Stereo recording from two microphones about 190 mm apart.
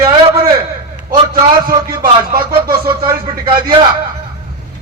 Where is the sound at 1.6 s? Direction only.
50° right (ahead or behind).